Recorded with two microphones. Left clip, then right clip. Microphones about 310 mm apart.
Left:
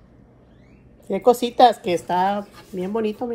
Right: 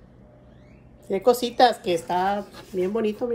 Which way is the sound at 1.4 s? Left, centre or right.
Centre.